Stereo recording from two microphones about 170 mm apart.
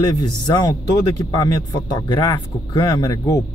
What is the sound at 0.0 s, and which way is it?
Speech, 25° left (ahead or behind).